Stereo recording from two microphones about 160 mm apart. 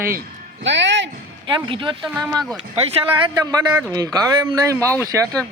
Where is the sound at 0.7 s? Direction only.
90° right.